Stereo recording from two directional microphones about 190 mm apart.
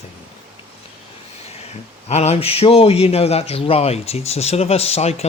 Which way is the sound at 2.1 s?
35° left (ahead or behind).